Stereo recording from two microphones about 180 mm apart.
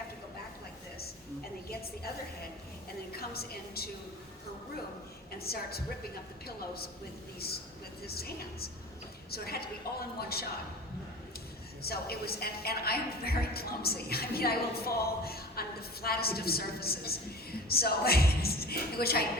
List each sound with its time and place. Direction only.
3.2 s a woman's voice: 60° left (ahead or behind)
5.4 s a woman's voice: 60° left (ahead or behind)
11.8 s a woman's voice: 60° left (ahead or behind)